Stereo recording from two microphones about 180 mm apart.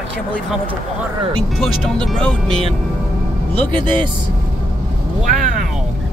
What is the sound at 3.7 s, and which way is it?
Speech, 25° right (ahead or behind).